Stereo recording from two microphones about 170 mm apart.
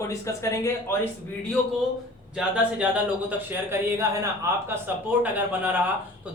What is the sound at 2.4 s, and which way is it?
Speech, 5° right (ahead or behind).